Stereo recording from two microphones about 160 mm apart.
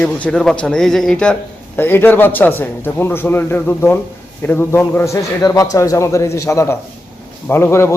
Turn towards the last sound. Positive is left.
turn(degrees=15)  # may be behind; listen again after turning